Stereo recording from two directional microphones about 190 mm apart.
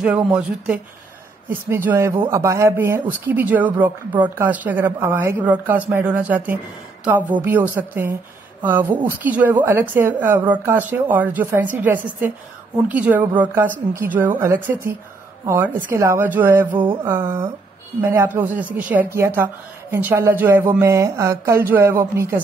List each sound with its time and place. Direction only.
0.3 s speech: 5° right (ahead or behind)
1.9 s a woman's voice: 15° right (ahead or behind)
16.8 s mantra: 25° right (ahead or behind)
17.1 s a woman's voice: 15° right (ahead or behind)